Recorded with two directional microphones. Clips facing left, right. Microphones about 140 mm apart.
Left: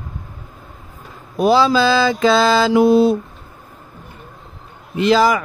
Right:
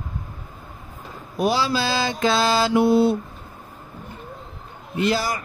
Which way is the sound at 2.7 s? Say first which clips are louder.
Left 4 dB; 90° left.